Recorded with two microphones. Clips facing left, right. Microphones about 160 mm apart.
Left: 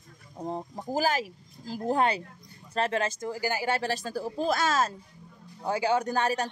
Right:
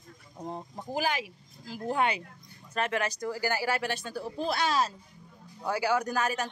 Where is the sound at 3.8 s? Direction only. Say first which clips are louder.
Left 3 dB; 35° left (ahead or behind).